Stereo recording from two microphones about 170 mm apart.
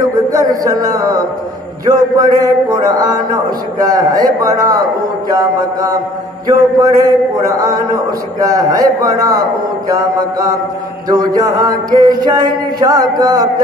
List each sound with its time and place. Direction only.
0.3 s a man's voice: 20° right (ahead or behind)